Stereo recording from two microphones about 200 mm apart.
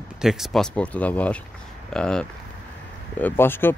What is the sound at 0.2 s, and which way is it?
Speech, centre (ahead or behind).